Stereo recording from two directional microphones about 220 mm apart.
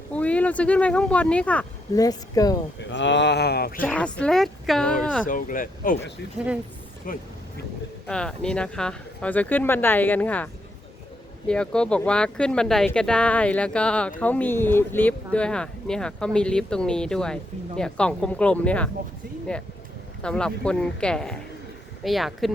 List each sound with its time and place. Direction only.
0.1 s speech: 5° left (ahead or behind)
2.0 s speech: 15° left (ahead or behind)
2.7 s speech: 55° left (ahead or behind)
3.8 s speech: 5° left (ahead or behind)
5.2 s speech: 40° left (ahead or behind)
8.0 s speech: 5° left (ahead or behind)
20.2 s speech: 5° left (ahead or behind)